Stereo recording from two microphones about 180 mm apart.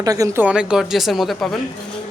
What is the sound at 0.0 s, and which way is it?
Speech, 20° right (ahead or behind).